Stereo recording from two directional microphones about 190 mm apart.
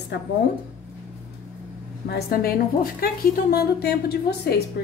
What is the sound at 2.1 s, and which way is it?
A woman's voice, 55° left (ahead or behind).